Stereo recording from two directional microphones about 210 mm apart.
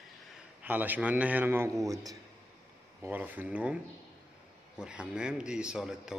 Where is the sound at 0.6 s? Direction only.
10° right (ahead or behind).